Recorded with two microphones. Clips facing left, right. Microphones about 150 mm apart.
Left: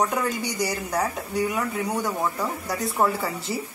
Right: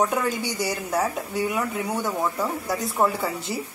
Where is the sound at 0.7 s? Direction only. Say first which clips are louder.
Right 3 dB; centre (ahead or behind).